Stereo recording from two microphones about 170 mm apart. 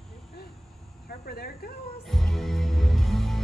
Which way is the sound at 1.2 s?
60° left (ahead or behind).